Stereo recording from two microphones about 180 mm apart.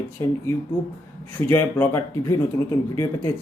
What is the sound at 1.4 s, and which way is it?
Speech, 10° left (ahead or behind).